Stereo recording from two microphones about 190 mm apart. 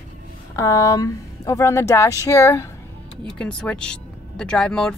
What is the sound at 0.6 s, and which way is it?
Speech, 15° left (ahead or behind).